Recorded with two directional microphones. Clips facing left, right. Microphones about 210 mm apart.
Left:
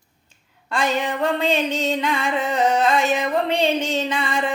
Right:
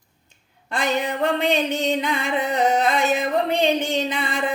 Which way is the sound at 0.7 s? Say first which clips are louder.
Left 1 dB; 15° right (ahead or behind).